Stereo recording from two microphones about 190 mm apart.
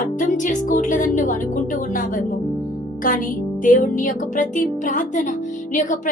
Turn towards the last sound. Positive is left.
turn(degrees=40)  # may be behind; listen again after turning